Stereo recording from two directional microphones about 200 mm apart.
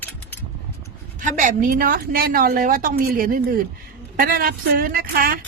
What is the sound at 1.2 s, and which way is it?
A woman's voice, 40° right (ahead or behind).